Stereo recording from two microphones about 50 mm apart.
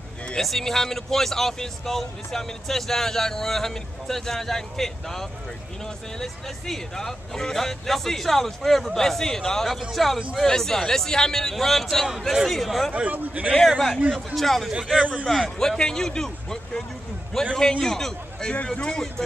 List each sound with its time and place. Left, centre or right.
0.4 s a man's voice: centre
12.9 s a man's voice: right
13.7 s a man's voice: centre
15.0 s a man's voice: right
15.2 s speech: centre